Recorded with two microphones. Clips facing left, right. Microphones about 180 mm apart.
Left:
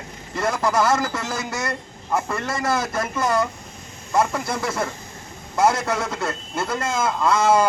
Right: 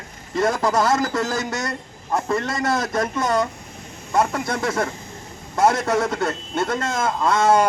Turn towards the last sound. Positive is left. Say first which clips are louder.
# right 1 dB
turn(degrees=0)  # may be behind; listen again after turning